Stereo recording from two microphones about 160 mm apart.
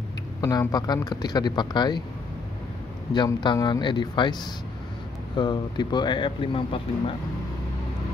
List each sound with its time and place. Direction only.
0.4 s speech: 20° left (ahead or behind)
3.1 s speech: 30° left (ahead or behind)
5.4 s speech: 30° left (ahead or behind)